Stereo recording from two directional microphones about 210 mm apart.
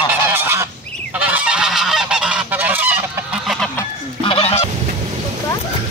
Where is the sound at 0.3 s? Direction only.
10° right (ahead or behind).